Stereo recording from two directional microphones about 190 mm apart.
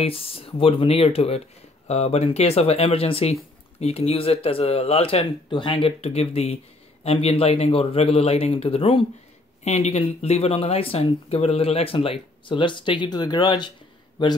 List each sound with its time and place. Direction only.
0.0 s speech: 30° left (ahead or behind)